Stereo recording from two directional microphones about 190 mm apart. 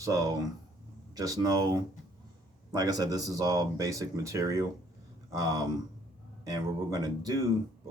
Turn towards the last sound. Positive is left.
turn(degrees=-20)  # may be behind; listen again after turning